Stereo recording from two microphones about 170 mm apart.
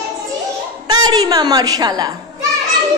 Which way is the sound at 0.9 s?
25° right (ahead or behind).